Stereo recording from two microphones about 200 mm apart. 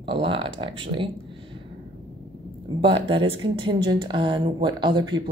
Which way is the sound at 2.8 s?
25° right (ahead or behind).